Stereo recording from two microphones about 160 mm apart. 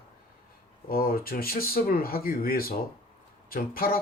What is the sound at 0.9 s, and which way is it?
Speech, 65° left (ahead or behind).